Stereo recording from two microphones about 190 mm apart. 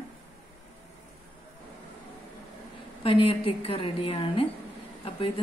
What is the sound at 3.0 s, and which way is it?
A woman's voice, 30° left (ahead or behind).